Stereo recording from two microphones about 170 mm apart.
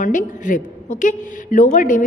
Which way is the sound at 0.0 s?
50° left (ahead or behind).